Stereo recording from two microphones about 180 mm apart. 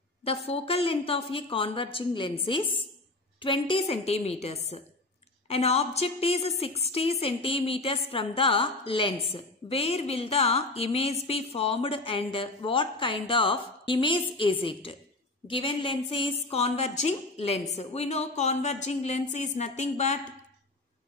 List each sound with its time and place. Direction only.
0.2 s a woman's voice: 35° left (ahead or behind)